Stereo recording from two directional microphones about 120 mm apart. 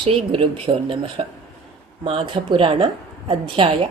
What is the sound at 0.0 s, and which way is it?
A woman's voice, 50° right (ahead or behind).